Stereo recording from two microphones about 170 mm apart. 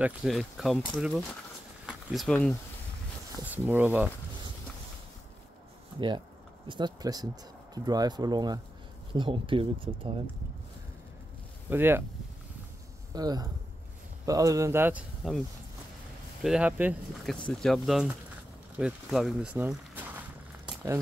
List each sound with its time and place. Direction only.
0.0 s speech: centre (ahead or behind)
3.5 s speech: 10° right (ahead or behind)
5.9 s speech: 25° right (ahead or behind)
11.7 s speech: 15° right (ahead or behind)
13.1 s speech: 25° right (ahead or behind); by 15.4 s 5° right (ahead or behind)
16.4 s speech: 5° right (ahead or behind)
17.5 s speech: 5° left (ahead or behind)
18.8 s a sound: 5° right (ahead or behind)